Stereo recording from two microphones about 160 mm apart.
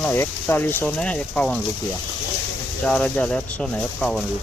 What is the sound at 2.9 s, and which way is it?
Speech, 5° left (ahead or behind).